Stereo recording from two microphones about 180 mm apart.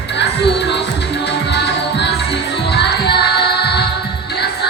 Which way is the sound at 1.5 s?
70° left (ahead or behind).